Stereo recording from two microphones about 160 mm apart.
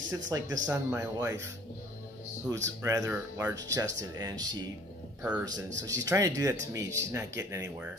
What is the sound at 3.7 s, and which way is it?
Speech, 20° right (ahead or behind).